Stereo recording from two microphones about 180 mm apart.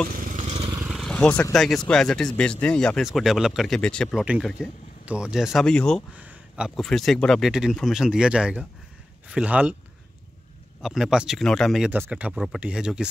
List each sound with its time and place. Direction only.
0.1 s motorcycle: 45° right (ahead or behind)
0.7 s vehicle: 5° right (ahead or behind)
1.1 s speech: 10° left (ahead or behind)
6.1 s speech: 5° right (ahead or behind)
10.8 s speech: centre (ahead or behind)